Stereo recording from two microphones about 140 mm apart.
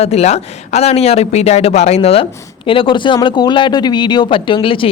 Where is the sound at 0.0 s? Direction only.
50° left (ahead or behind).